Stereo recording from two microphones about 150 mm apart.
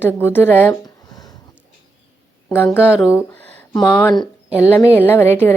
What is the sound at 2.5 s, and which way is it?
Speech, 10° left (ahead or behind).